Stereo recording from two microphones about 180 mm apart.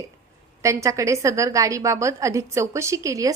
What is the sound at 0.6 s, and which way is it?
A woman's voice, 15° right (ahead or behind).